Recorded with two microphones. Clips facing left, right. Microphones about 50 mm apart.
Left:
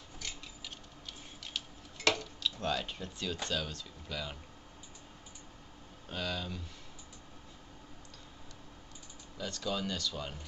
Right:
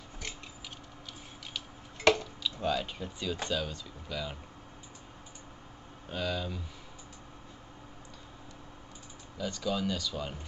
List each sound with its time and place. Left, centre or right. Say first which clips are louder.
2.0 s tick-tock: right 6 dB; right
2.4 s speech: right 3 dB; centre
6.0 s speech: right 4 dB; centre
9.4 s speech: right 4 dB; centre